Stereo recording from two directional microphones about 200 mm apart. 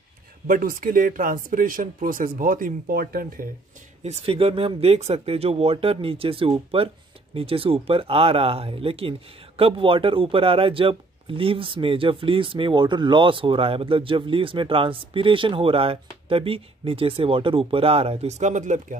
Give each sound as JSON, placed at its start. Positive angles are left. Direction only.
{"t": 0.5, "sound": "speech", "side_deg": -45}
{"t": 4.0, "sound": "speech", "side_deg": -30}